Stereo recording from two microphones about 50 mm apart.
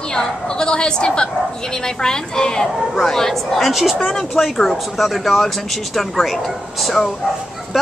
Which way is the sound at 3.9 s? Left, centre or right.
Centre.